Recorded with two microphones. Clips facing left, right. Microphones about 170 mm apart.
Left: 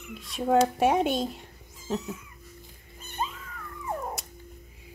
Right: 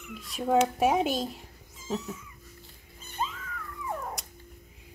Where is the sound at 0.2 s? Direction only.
Centre (ahead or behind).